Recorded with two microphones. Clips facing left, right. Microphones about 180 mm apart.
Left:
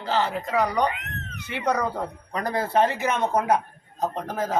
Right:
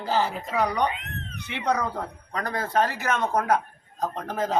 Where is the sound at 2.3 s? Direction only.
30° left (ahead or behind).